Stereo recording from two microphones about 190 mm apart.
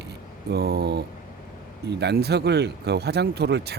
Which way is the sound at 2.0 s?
60° right (ahead or behind).